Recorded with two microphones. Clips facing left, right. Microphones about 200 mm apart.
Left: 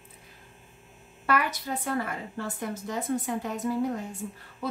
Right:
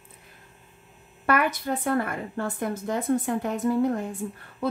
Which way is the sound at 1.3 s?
55° right (ahead or behind).